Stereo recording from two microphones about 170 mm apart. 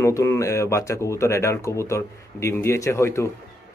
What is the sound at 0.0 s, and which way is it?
A man's voice, 15° left (ahead or behind).